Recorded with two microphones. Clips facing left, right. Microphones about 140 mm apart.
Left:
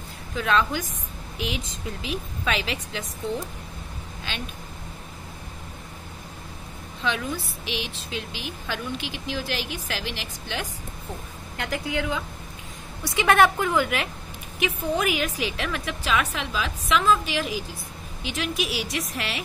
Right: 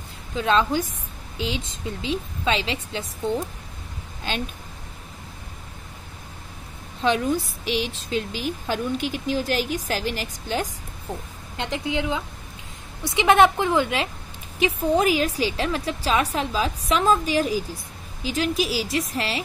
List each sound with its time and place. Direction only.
0.4 s a woman's voice: 25° right (ahead or behind)
7.0 s a woman's voice: 45° right (ahead or behind)
11.5 s a woman's voice: 25° right (ahead or behind)